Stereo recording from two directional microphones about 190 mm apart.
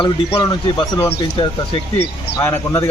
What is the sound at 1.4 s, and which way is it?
Speech, 25° left (ahead or behind).